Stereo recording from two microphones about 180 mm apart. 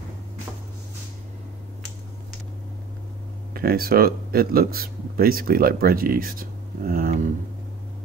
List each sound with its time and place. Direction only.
3.5 s speech: 55° right (ahead or behind)